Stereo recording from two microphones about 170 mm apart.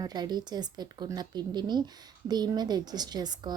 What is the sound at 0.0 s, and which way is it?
A woman's voice, 25° right (ahead or behind).